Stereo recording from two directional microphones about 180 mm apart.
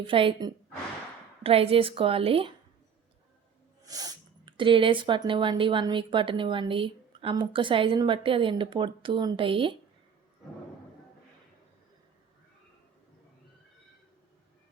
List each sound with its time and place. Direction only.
0.1 s a woman's voice: 30° right (ahead or behind)
3.8 s speech: 20° right (ahead or behind)